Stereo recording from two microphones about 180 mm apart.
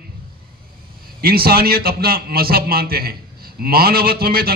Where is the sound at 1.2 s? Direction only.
55° right (ahead or behind).